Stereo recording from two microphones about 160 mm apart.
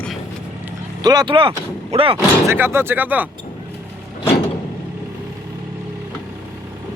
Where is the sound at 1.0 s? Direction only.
25° right (ahead or behind).